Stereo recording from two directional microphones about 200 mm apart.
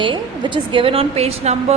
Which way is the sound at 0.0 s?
25° right (ahead or behind).